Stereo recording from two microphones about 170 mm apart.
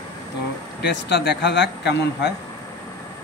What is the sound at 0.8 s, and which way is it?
Speech, 80° left.